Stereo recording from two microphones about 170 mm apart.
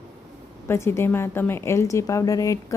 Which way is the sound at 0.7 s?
15° left (ahead or behind).